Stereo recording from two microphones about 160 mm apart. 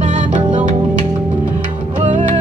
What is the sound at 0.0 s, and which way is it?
Music, 50° right (ahead or behind).